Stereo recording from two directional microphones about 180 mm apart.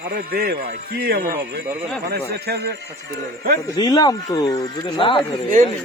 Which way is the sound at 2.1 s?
60° right (ahead or behind).